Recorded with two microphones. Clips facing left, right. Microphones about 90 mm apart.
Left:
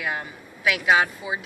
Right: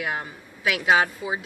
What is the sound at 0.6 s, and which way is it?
Speech, 30° right (ahead or behind).